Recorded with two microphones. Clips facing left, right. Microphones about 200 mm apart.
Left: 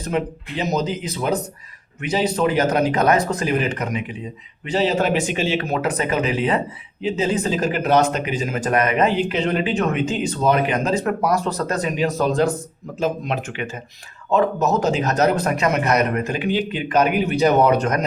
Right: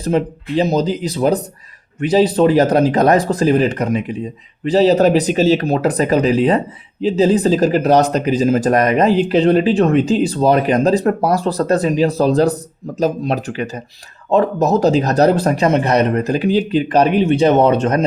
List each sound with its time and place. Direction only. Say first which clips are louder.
0.0 s speech: right 6 dB; 35° right (ahead or behind)